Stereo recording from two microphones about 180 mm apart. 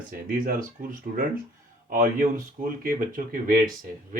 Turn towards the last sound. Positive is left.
turn(degrees=-50)  # may be behind; listen again after turning